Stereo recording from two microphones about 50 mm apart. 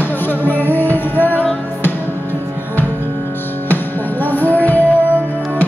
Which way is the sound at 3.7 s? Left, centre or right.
Left.